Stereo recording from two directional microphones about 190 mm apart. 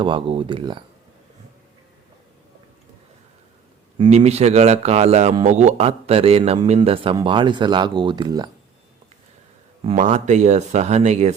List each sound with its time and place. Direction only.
0.0 s speech: 30° right (ahead or behind)
3.9 s a man's voice: 30° right (ahead or behind)
9.8 s a man's voice: 40° right (ahead or behind)